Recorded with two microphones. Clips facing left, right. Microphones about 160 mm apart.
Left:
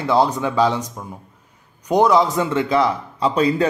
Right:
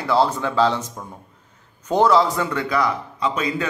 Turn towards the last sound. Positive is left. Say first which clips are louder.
# left 6 dB
turn(degrees=35)  # may be behind; listen again after turning